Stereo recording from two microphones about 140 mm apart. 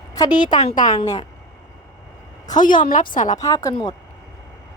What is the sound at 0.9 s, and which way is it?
Speech, 25° left (ahead or behind).